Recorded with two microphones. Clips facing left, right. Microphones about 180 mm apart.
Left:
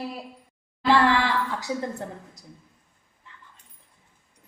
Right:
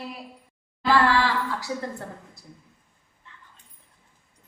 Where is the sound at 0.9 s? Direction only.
20° left (ahead or behind).